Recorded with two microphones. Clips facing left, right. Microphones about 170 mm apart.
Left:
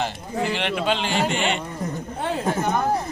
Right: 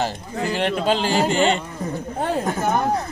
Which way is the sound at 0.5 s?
40° right (ahead or behind).